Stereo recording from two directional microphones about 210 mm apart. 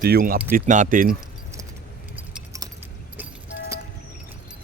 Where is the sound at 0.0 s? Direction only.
45° right (ahead or behind).